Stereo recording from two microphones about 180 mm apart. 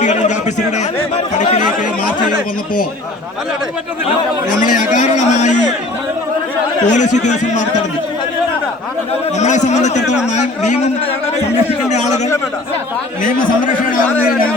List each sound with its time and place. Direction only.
0.0 s a man's voice: 40° left (ahead or behind)
1.4 s chatter: 45° left (ahead or behind)
4.6 s a man's voice: 45° left (ahead or behind)
6.8 s speech: 40° left (ahead or behind)
9.4 s speech: 40° left (ahead or behind)
11.9 s a sound: 40° left (ahead or behind)